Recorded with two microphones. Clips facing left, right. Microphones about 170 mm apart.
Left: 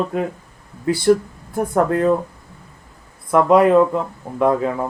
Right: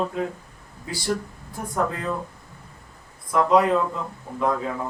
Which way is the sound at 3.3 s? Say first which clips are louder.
Left 6 dB; 60° left (ahead or behind).